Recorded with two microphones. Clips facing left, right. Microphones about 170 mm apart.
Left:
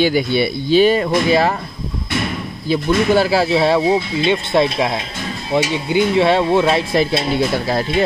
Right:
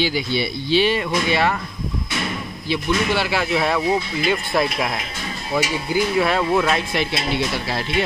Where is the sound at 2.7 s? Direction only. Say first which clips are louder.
Left 6 dB; 45° left (ahead or behind).